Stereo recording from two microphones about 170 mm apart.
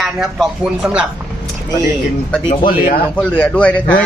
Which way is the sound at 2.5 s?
55° left (ahead or behind).